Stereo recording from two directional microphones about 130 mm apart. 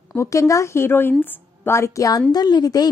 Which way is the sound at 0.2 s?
25° left (ahead or behind).